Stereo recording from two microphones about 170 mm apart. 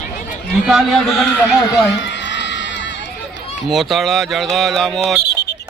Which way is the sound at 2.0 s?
90° left.